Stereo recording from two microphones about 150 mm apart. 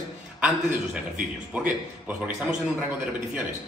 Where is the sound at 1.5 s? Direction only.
10° right (ahead or behind).